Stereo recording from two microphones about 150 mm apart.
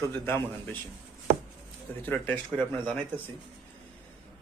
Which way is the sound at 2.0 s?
10° left (ahead or behind).